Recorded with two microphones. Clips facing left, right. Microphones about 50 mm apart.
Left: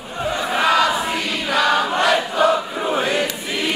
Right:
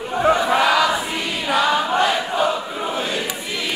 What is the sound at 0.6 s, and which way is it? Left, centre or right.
Choir, left.